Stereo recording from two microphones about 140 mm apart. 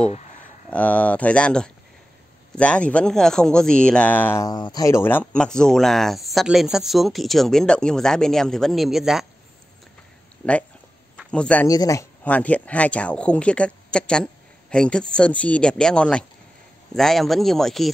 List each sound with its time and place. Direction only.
0.7 s speech: 10° left (ahead or behind)
4.4 s speech: 30° left (ahead or behind); by 9.2 s centre (ahead or behind)
10.4 s speech: 10° left (ahead or behind)
11.6 s speech: 25° left (ahead or behind)
12.2 s speech: 10° left (ahead or behind)